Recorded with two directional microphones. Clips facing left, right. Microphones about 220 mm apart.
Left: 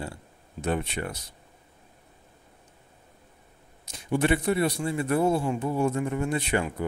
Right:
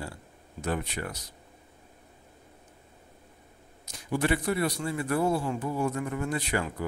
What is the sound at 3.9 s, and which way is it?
Speech, 25° left (ahead or behind).